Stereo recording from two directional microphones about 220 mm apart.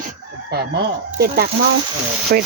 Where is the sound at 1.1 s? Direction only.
45° right (ahead or behind).